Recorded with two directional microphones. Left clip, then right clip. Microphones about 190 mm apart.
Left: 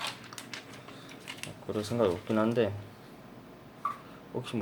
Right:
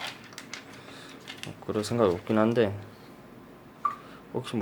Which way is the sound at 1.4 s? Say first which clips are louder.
Right 4 dB; 15° right (ahead or behind).